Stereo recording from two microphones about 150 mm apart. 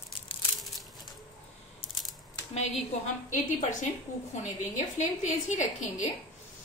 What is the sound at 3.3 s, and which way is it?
A woman's voice, 60° left (ahead or behind).